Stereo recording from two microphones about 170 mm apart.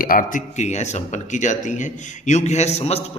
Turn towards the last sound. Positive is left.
turn(degrees=40)  # may be behind; listen again after turning